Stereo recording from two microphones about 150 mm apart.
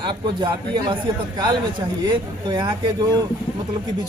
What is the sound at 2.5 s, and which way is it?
Speech, 30° right (ahead or behind).